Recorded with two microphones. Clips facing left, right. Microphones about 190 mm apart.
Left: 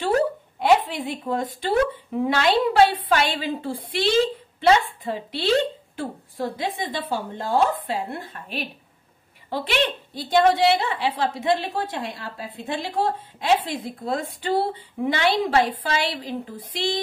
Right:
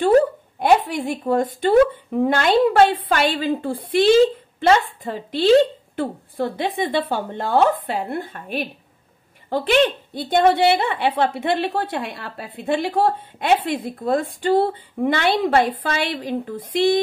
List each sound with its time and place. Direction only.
0.6 s a woman's voice: 45° right (ahead or behind)
6.6 s a woman's voice: 60° right (ahead or behind)